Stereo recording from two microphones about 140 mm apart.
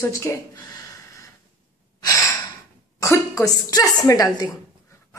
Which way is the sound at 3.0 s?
20° left (ahead or behind).